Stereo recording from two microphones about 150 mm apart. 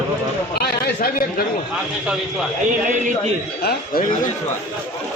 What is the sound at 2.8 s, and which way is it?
Speech, 55° right (ahead or behind).